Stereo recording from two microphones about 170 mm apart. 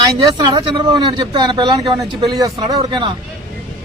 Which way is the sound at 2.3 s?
25° right (ahead or behind).